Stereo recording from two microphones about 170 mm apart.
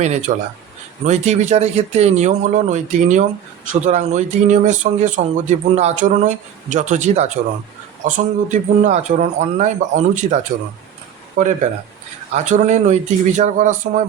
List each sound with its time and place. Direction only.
0.0 s speech: 45° right (ahead or behind)